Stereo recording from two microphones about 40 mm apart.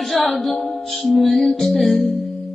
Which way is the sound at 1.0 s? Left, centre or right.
Centre.